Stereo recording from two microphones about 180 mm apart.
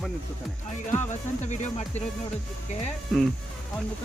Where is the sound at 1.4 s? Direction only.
40° left (ahead or behind).